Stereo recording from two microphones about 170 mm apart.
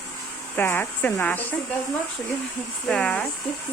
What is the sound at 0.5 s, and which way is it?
Speech, 10° left (ahead or behind).